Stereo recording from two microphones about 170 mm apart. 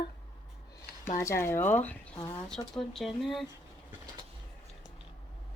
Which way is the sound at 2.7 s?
Centre (ahead or behind).